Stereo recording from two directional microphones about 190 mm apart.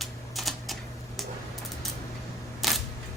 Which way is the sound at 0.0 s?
Centre (ahead or behind).